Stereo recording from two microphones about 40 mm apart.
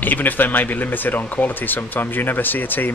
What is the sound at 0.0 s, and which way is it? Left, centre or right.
Speech, left.